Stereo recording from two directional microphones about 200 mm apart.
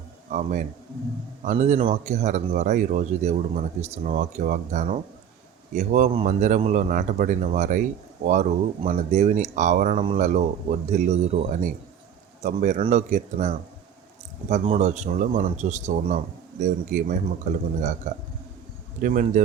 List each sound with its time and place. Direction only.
0.3 s speech: 40° right (ahead or behind)